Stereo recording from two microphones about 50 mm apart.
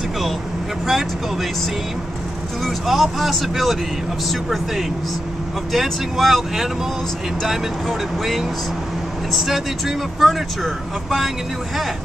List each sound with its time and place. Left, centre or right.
2.6 s speech: centre
9.3 s speech: centre